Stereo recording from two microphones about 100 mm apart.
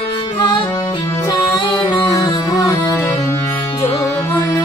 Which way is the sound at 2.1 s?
40° left (ahead or behind).